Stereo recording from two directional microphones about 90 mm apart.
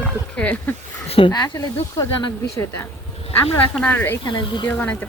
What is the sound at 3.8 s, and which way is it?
Speech, 20° left (ahead or behind).